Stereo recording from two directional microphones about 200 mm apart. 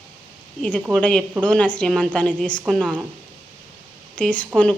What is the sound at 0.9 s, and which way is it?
Speech, 5° left (ahead or behind).